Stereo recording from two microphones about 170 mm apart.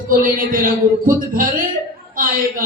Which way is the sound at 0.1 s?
55° right (ahead or behind).